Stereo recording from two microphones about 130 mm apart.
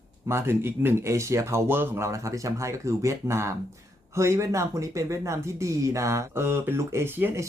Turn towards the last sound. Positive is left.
turn(degrees=-15)  # may be behind; listen again after turning